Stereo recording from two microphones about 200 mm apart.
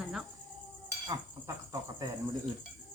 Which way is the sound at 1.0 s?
15° right (ahead or behind).